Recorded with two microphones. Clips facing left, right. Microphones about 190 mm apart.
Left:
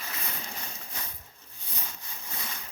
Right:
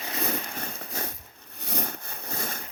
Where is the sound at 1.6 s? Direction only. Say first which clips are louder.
Right 11 dB; 70° right (ahead or behind); by 2.6 s 50° right (ahead or behind).